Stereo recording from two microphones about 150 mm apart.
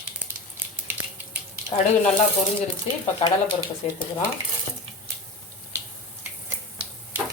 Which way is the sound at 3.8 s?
45° left (ahead or behind).